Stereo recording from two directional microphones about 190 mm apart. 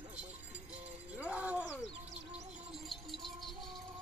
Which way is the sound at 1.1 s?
5° right (ahead or behind).